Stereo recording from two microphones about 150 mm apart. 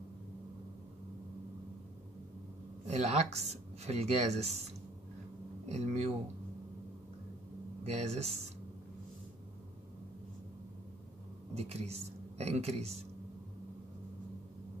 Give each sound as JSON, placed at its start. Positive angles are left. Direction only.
{"t": 2.9, "sound": "speech", "side_deg": -45}
{"t": 7.8, "sound": "speech", "side_deg": -45}
{"t": 11.5, "sound": "a woman's voice", "side_deg": -45}